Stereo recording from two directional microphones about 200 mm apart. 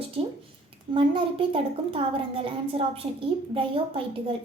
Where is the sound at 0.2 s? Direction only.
25° right (ahead or behind).